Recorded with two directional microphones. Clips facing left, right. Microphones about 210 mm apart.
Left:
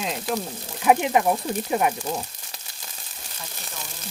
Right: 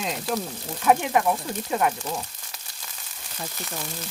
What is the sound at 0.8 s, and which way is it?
Speech, 20° left (ahead or behind).